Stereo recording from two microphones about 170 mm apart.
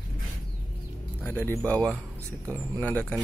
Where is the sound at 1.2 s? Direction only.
10° left (ahead or behind).